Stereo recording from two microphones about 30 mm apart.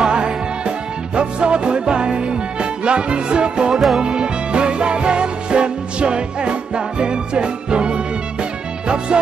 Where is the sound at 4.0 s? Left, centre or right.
Right.